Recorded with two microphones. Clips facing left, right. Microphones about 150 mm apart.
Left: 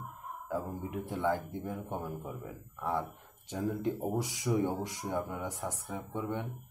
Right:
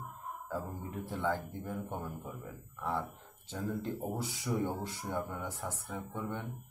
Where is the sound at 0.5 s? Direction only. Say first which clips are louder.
Left 4 dB; 15° left (ahead or behind).